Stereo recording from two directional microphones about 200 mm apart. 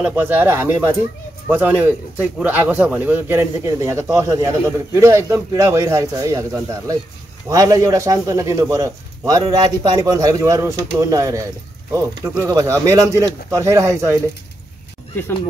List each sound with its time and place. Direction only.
0.0 s a man's voice: 10° right (ahead or behind)